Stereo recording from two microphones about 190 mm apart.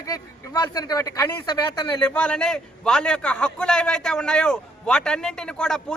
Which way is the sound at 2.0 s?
5° left (ahead or behind).